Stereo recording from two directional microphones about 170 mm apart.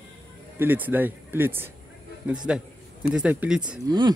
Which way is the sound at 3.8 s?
25° right (ahead or behind).